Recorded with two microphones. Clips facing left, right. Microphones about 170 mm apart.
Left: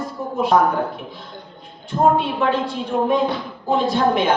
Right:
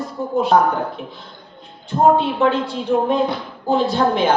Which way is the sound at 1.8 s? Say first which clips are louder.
Right 2 dB; 25° right (ahead or behind).